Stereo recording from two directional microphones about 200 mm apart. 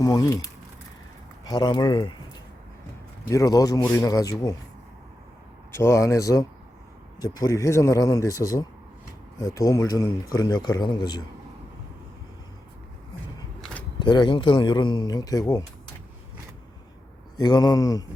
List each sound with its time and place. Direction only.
0.0 s a man's voice: 15° left (ahead or behind)
3.2 s speech: 15° left (ahead or behind)
5.7 s a man's voice: 15° left (ahead or behind)
14.0 s a man's voice: 25° left (ahead or behind)
17.3 s a man's voice: 20° left (ahead or behind)